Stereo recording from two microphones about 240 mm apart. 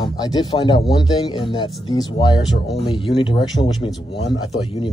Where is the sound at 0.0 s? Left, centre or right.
Centre.